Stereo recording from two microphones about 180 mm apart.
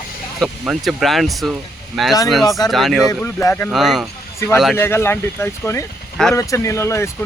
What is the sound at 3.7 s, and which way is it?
Speech, centre (ahead or behind).